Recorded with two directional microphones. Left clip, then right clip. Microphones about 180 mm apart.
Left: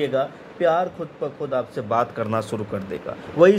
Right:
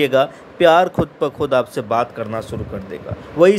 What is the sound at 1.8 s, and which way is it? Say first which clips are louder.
Speech: right 3 dB; 5° right (ahead or behind).